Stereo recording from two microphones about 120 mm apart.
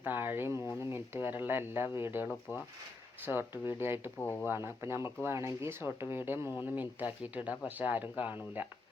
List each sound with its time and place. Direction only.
0.0 s speech: 15° right (ahead or behind)
4.2 s speech: 20° left (ahead or behind)
4.4 s speech: 20° right (ahead or behind)